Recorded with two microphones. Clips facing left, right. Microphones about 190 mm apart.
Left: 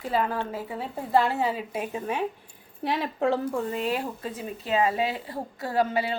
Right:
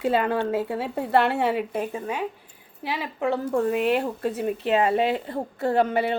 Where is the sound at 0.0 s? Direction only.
75° right (ahead or behind).